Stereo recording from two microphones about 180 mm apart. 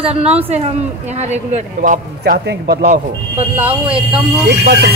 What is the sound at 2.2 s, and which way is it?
Speech, 60° right (ahead or behind).